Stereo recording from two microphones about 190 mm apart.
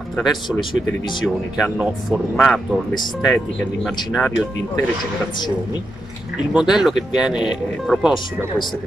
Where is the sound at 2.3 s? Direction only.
5° left (ahead or behind).